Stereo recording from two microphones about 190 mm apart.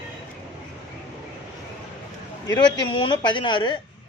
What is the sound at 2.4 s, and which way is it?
A woman's voice, 20° left (ahead or behind).